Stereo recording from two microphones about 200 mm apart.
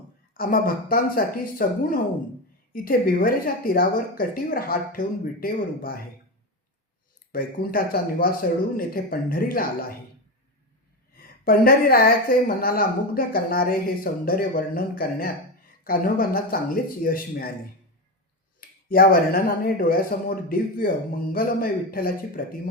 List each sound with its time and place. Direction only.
0.3 s a woman's voice: 45° left (ahead or behind)
7.3 s a woman's voice: 45° left (ahead or behind)
11.4 s a woman's voice: 45° left (ahead or behind)
18.6 s a woman's voice: 45° left (ahead or behind)